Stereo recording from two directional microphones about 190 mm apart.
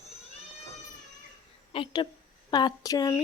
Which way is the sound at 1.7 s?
25° left (ahead or behind).